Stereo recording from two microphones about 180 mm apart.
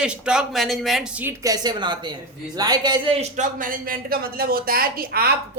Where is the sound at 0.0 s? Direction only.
5° right (ahead or behind).